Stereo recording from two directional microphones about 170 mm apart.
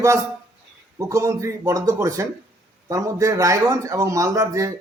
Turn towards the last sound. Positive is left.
turn(degrees=-20)  # may be behind; listen again after turning